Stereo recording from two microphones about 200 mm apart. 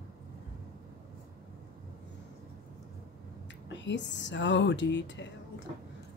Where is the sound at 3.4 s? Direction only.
65° left (ahead or behind).